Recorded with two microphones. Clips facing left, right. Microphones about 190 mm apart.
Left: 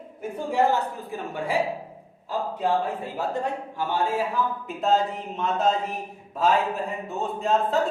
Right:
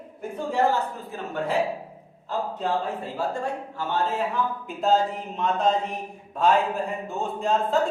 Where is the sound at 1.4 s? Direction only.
10° left (ahead or behind).